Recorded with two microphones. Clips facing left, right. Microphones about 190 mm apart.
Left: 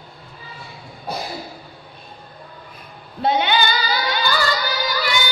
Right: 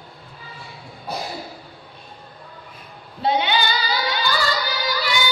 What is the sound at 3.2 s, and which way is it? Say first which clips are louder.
Female singing: left 2 dB; 55° left (ahead or behind).